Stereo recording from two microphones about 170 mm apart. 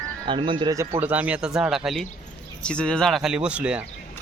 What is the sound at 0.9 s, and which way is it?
Speech, 10° right (ahead or behind).